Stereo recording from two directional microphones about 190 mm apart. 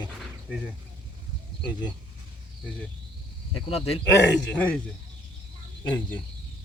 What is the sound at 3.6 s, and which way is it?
Speech, 30° left (ahead or behind).